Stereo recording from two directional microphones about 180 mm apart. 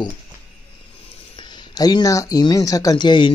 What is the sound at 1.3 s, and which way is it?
Speech, 25° left (ahead or behind).